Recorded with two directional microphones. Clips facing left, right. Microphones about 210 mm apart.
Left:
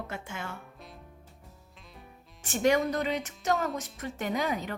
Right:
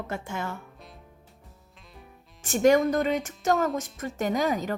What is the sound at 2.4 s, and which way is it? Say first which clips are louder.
A woman's voice: right 5 dB; 45° right (ahead or behind).